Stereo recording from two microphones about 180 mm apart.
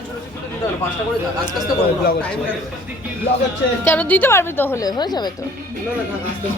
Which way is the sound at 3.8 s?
10° left (ahead or behind).